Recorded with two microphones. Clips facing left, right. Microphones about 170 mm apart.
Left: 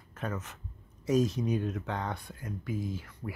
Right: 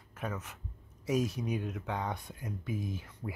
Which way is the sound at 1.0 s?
10° right (ahead or behind).